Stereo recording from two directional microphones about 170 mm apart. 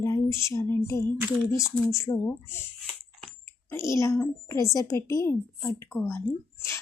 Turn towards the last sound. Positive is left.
turn(degrees=15)  # may be behind; listen again after turning